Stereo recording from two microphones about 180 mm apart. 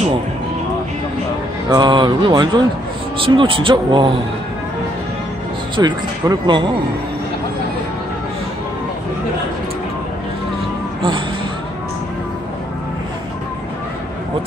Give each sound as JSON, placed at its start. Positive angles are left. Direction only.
{"t": 1.7, "sound": "speech", "side_deg": -25}
{"t": 5.8, "sound": "speech", "side_deg": -25}
{"t": 11.0, "sound": "a sound", "side_deg": -30}